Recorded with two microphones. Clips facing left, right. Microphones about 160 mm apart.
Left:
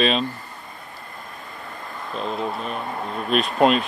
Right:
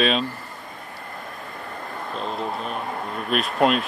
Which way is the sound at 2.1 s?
Centre (ahead or behind).